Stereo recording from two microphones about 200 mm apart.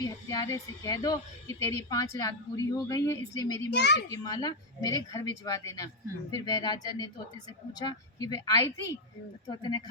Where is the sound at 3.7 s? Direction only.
60° left (ahead or behind).